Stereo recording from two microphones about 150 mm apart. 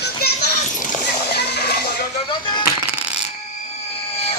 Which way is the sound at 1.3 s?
90° left.